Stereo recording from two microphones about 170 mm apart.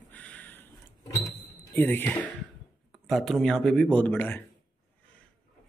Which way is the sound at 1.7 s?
10° left (ahead or behind).